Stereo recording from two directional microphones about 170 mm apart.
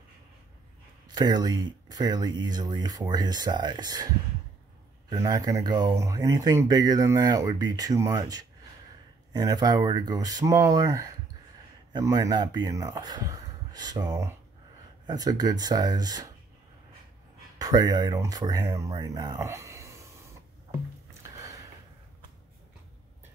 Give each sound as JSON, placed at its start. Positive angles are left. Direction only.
{"t": 1.1, "sound": "speech", "side_deg": -25}
{"t": 5.2, "sound": "speech", "side_deg": -20}
{"t": 17.6, "sound": "speech", "side_deg": -20}
{"t": 21.4, "sound": "a sound", "side_deg": -20}